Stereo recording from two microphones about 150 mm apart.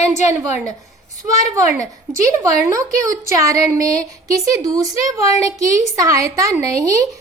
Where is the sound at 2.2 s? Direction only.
20° right (ahead or behind).